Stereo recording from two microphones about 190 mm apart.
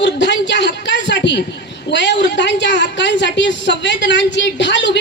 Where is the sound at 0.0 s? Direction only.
70° left (ahead or behind).